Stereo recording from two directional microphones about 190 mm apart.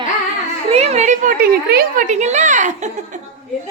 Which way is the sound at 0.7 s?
35° right (ahead or behind).